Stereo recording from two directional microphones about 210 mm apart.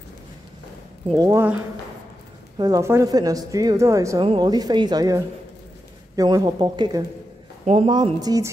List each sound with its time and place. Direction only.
1.1 s a woman's voice: 15° right (ahead or behind)
7.6 s a man's voice: 30° right (ahead or behind)
7.9 s a woman's voice: 20° right (ahead or behind)